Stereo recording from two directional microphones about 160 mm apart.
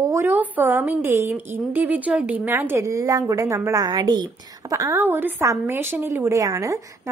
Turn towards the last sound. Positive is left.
turn(degrees=-20)  # may be behind; listen again after turning